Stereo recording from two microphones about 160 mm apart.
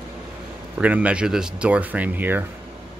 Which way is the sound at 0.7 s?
10° right (ahead or behind).